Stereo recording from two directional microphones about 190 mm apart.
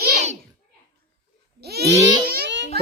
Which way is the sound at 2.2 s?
55° right (ahead or behind).